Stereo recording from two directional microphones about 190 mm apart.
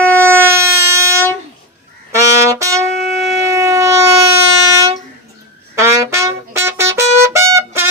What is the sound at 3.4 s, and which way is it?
Shofar, 15° right (ahead or behind).